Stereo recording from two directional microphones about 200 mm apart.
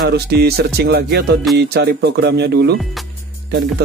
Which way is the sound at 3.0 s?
Centre (ahead or behind).